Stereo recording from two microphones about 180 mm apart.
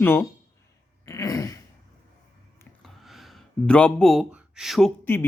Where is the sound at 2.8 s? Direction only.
Centre (ahead or behind).